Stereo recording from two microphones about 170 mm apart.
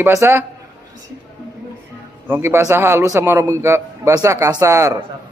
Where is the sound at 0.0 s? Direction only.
15° right (ahead or behind).